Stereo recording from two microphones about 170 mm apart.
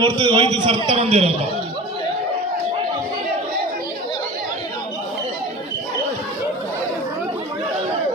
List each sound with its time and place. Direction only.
0.0 s a man's voice: 30° right (ahead or behind)